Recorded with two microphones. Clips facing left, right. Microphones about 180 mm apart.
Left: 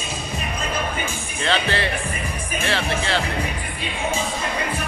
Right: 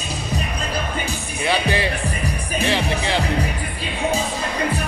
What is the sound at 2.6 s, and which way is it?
Speech, 15° right (ahead or behind).